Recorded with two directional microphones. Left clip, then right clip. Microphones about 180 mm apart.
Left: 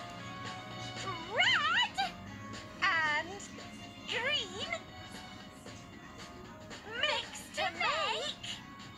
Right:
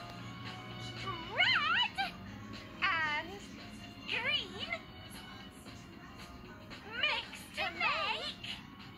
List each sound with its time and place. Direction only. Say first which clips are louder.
0.9 s music: left 1 dB; 40° left (ahead or behind)
6.9 s children playing: left 1 dB; 40° left (ahead or behind)